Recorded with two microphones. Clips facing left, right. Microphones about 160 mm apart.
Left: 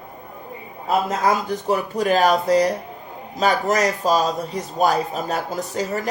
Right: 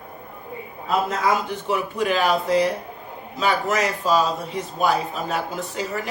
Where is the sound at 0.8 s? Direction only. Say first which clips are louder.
Left 2 dB; 40° left (ahead or behind).